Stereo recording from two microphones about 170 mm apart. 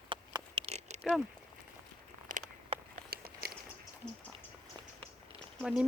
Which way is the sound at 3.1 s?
60° right (ahead or behind).